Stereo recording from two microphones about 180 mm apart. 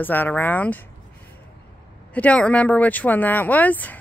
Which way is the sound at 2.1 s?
10° left (ahead or behind).